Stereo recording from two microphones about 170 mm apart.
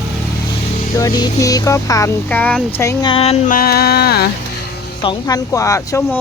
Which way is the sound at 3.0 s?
35° left (ahead or behind).